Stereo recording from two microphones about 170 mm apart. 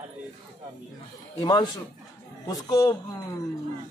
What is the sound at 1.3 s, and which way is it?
A man's voice, 25° left (ahead or behind).